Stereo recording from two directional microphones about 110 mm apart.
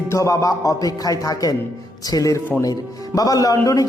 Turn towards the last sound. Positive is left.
turn(degrees=30)  # may be behind; listen again after turning